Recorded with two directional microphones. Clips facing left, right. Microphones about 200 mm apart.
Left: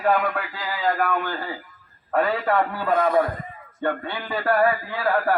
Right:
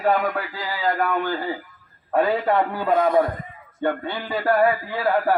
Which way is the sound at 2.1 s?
20° right (ahead or behind).